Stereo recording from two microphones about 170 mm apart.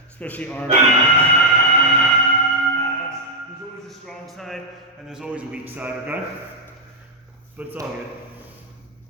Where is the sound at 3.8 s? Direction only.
Centre (ahead or behind).